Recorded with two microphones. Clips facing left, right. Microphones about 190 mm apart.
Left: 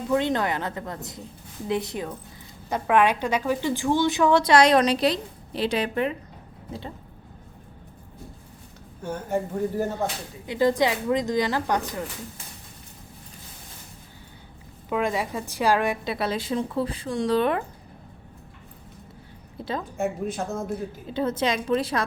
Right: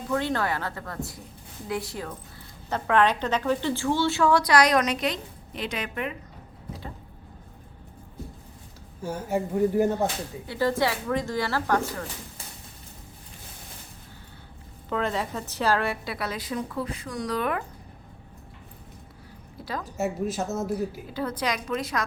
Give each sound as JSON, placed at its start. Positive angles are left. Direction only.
{"t": 0.1, "sound": "a woman's voice", "side_deg": 20}
{"t": 9.0, "sound": "speech", "side_deg": -10}
{"t": 10.4, "sound": "a woman's voice", "side_deg": 15}
{"t": 14.8, "sound": "a woman's voice", "side_deg": 10}
{"t": 19.6, "sound": "a woman's voice", "side_deg": 25}
{"t": 20.0, "sound": "speech", "side_deg": -5}
{"t": 21.1, "sound": "a woman's voice", "side_deg": 25}